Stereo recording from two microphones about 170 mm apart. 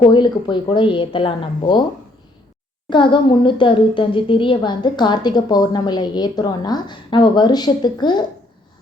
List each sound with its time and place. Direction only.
0.1 s a woman's voice: 25° left (ahead or behind)
2.9 s a woman's voice: 30° left (ahead or behind)